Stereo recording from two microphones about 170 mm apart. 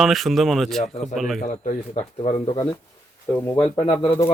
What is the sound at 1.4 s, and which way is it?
Speech, 40° left (ahead or behind).